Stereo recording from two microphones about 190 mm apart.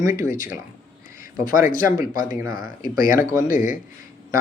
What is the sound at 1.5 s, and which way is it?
Speech, 45° left (ahead or behind).